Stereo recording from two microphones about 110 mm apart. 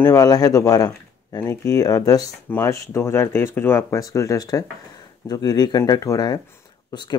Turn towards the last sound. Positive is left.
turn(degrees=40)  # may be behind; listen again after turning